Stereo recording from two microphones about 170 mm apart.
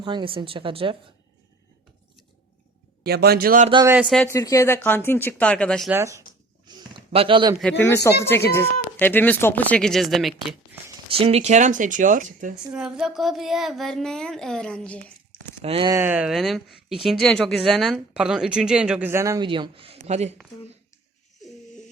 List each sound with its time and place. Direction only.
0.0 s speech: 30° right (ahead or behind)
3.0 s a man's voice: 70° right (ahead or behind)
4.0 s speech: 5° left (ahead or behind)
5.9 s speech: 15° right (ahead or behind)
6.7 s a sound: 25° right (ahead or behind)
7.9 s speech: 15° left (ahead or behind); by 10.3 s centre (ahead or behind)
11.1 s speech: 35° right (ahead or behind)
12.7 s a woman's voice: 5° right (ahead or behind)
15.6 s speech: 35° right (ahead or behind)
15.9 s a woman's voice: 15° right (ahead or behind)
19.5 s speech: 30° right (ahead or behind)